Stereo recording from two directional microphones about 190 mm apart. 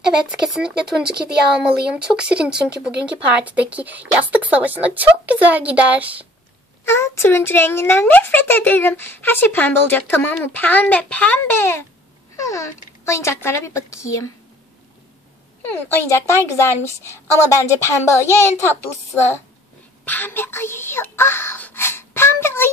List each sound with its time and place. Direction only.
0.3 s speech: 5° right (ahead or behind)
0.7 s speech: 55° right (ahead or behind)
2.1 s speech: 5° right (ahead or behind)
6.8 s speech: 15° left (ahead or behind)
15.6 s speech: 10° left (ahead or behind)